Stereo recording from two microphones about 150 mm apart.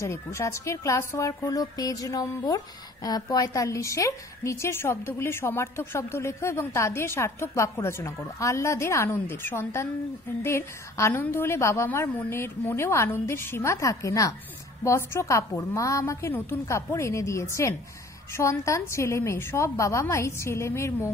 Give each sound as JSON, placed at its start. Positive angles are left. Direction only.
{"t": 0.0, "sound": "a woman's voice", "side_deg": 20}